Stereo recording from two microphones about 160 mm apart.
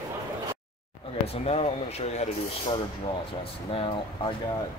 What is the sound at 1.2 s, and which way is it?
Speech, 40° left (ahead or behind).